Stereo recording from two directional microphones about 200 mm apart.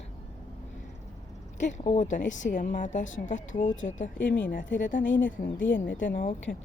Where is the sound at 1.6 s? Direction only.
35° left (ahead or behind).